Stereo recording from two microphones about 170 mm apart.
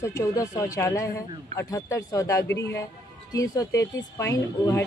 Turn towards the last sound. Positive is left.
turn(degrees=15)  # may be behind; listen again after turning